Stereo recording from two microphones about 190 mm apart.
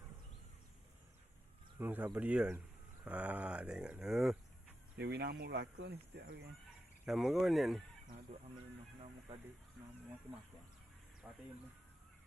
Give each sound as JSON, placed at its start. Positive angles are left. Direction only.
{"t": 1.8, "sound": "speech", "side_deg": -10}
{"t": 4.9, "sound": "speech", "side_deg": -60}
{"t": 7.0, "sound": "speech", "side_deg": 0}
{"t": 11.2, "sound": "speech", "side_deg": -15}